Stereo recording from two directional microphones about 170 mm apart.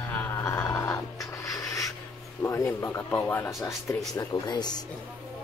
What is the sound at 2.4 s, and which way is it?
Speech, 15° left (ahead or behind).